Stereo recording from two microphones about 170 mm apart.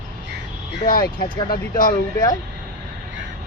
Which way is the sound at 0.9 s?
60° left (ahead or behind).